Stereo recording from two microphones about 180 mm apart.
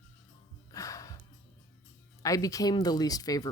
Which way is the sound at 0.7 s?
20° left (ahead or behind).